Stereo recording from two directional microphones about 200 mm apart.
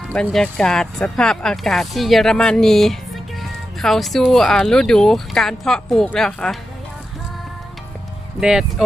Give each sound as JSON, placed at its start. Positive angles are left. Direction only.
{"t": 0.1, "sound": "speech", "side_deg": 5}
{"t": 8.4, "sound": "speech", "side_deg": -5}